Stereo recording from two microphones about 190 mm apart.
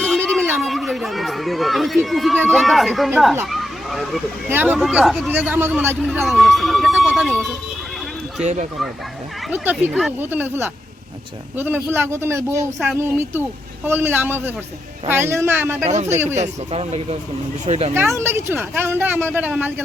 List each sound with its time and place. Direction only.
0.0 s a sound: 5° left (ahead or behind)
0.6 s speech: centre (ahead or behind)
3.4 s a sound: centre (ahead or behind)
4.4 s speech: 10° right (ahead or behind)
6.2 s speech: centre (ahead or behind)
9.5 s speech: 10° right (ahead or behind)
15.9 s speech: 35° right (ahead or behind)
16.1 s speech: 15° right (ahead or behind)
16.4 s speech: 30° right (ahead or behind)
17.9 s speech: 10° right (ahead or behind)